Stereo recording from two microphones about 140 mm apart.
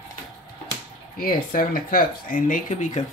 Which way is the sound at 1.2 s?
85° left.